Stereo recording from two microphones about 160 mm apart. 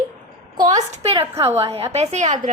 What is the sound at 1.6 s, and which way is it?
Speech, 40° right (ahead or behind).